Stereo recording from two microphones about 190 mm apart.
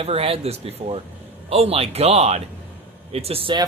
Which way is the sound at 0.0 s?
30° right (ahead or behind).